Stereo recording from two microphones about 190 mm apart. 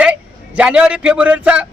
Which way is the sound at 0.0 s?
5° right (ahead or behind).